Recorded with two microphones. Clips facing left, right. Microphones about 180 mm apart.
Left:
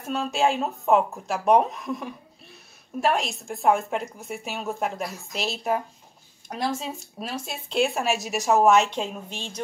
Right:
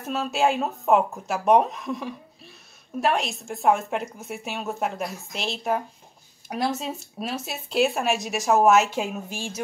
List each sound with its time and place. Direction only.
0.0 s speech: centre (ahead or behind)